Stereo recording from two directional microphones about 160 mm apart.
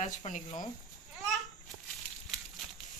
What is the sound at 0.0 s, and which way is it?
Speech, 45° left (ahead or behind).